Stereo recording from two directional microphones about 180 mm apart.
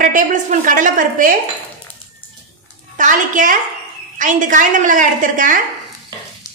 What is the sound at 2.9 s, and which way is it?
A woman's voice, 45° right (ahead or behind).